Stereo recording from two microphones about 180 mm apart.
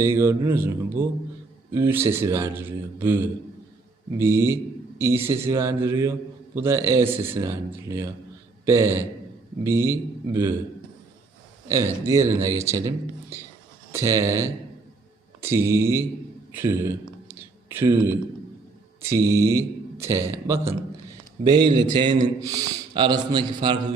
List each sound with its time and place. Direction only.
0.0 s a man's voice: 15° right (ahead or behind)
11.7 s a man's voice: 15° right (ahead or behind)
13.9 s a man's voice: 15° right (ahead or behind)